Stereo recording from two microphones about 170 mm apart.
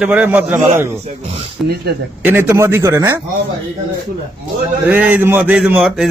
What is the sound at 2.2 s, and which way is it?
Speech, 10° right (ahead or behind).